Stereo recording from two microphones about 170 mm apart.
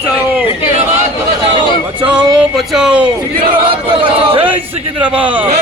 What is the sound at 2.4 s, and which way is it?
Speech, 5° right (ahead or behind).